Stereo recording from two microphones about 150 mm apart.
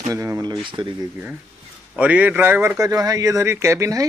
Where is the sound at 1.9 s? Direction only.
10° right (ahead or behind).